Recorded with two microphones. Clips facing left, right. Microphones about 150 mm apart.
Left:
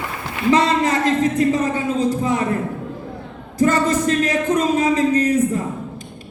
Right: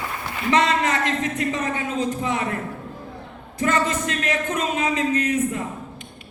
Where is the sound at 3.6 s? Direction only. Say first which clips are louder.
Left 5 dB; 35° left (ahead or behind).